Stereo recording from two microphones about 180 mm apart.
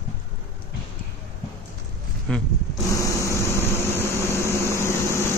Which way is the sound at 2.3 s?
5° left (ahead or behind).